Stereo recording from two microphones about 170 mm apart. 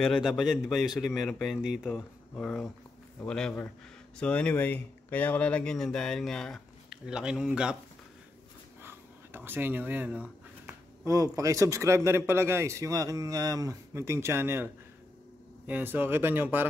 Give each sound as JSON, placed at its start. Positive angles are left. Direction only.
{"t": 0.0, "sound": "speech", "side_deg": 0}
{"t": 8.8, "sound": "a sound", "side_deg": -15}
{"t": 10.7, "sound": "speech", "side_deg": -20}